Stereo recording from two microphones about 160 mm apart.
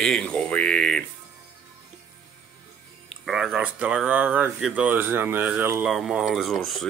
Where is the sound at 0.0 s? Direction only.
5° left (ahead or behind).